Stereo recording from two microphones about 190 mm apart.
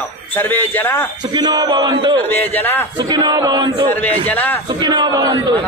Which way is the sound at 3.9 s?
10° left (ahead or behind).